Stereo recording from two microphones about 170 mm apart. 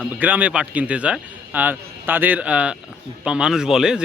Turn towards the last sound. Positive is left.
turn(degrees=-5)  # may be behind; listen again after turning